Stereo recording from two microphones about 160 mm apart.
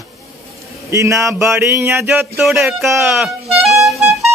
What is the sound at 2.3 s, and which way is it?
Speech, centre (ahead or behind).